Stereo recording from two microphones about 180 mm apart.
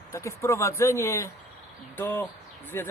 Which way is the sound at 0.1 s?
15° left (ahead or behind).